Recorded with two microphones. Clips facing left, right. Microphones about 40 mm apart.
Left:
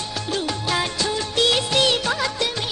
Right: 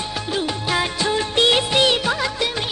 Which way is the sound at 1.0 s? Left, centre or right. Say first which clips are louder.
Right 4 dB; right.